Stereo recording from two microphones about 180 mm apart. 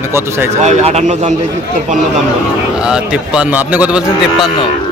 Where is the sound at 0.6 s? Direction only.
40° right (ahead or behind).